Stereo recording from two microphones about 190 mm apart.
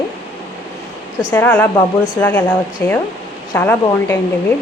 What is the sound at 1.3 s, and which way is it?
A woman's voice, 10° left (ahead or behind).